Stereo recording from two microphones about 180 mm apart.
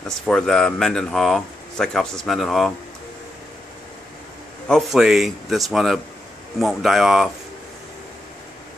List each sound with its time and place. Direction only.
0.3 s speech: 5° left (ahead or behind)
4.6 s speech: centre (ahead or behind)